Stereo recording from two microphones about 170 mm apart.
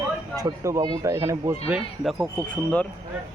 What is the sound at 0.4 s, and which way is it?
Speech, 20° right (ahead or behind).